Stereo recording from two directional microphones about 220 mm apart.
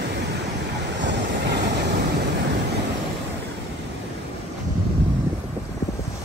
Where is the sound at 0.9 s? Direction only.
50° right (ahead or behind).